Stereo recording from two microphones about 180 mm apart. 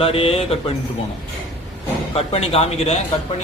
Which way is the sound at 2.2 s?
35° left (ahead or behind).